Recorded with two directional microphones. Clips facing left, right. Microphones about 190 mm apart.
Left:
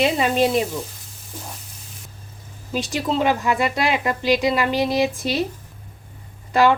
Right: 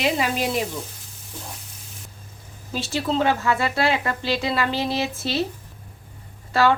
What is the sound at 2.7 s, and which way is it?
A woman's voice, 15° left (ahead or behind).